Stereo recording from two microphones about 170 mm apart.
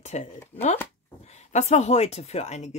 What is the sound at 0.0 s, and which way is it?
Speech, 40° left (ahead or behind).